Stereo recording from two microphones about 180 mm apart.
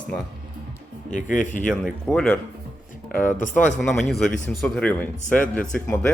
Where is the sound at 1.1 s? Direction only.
45° left (ahead or behind).